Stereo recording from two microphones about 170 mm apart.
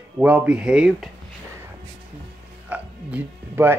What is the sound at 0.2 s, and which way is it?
Speech, 5° right (ahead or behind).